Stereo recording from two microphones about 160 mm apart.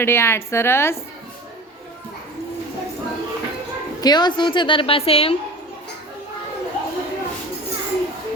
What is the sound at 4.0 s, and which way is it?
A woman's voice, 25° left (ahead or behind).